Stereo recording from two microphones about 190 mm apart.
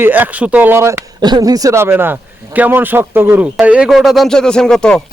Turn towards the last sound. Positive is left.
turn(degrees=5)  # may be behind; listen again after turning